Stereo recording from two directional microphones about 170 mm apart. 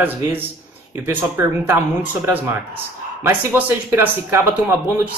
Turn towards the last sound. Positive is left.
turn(degrees=-15)  # may be behind; listen again after turning